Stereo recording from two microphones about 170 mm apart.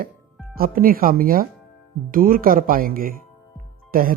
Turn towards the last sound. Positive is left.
turn(degrees=-55)  # may be behind; listen again after turning